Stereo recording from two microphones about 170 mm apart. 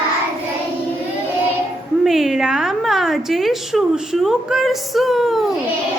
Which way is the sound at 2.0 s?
Centre (ahead or behind).